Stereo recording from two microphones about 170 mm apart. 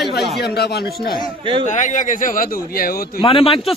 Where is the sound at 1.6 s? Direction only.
45° left (ahead or behind).